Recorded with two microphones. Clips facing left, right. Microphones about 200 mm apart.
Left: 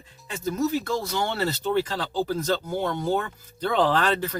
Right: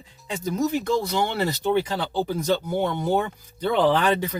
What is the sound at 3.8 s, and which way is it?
Speech, 10° right (ahead or behind).